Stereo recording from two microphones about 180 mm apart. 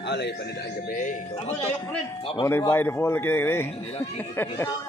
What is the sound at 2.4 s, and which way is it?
Speech, 15° left (ahead or behind).